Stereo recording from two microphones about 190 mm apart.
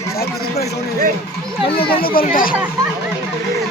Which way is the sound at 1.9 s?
50° left (ahead or behind).